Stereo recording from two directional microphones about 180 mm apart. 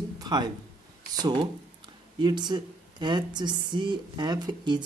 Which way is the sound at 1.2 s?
25° right (ahead or behind).